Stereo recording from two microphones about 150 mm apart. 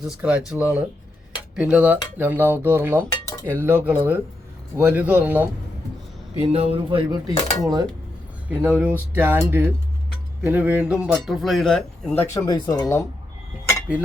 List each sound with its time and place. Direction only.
0.0 s speech: 5° right (ahead or behind)
6.4 s speech: 40° right (ahead or behind)
7.3 s speech: 25° right (ahead or behind)
8.4 s speech: 15° right (ahead or behind); by 12.8 s 20° left (ahead or behind)
13.9 s speech: 5° right (ahead or behind)